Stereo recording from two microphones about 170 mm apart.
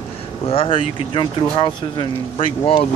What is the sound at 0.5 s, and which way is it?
Speech, 30° left (ahead or behind).